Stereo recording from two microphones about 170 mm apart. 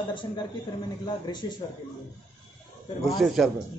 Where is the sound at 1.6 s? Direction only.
25° left (ahead or behind).